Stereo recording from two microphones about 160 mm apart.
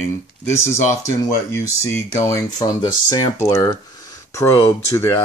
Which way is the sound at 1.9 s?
20° left (ahead or behind).